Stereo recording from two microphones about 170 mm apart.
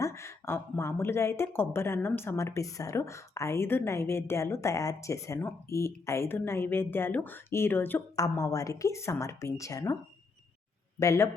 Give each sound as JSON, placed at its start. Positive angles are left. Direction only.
{"t": 0.0, "sound": "speech", "side_deg": 15}
{"t": 11.0, "sound": "speech", "side_deg": 15}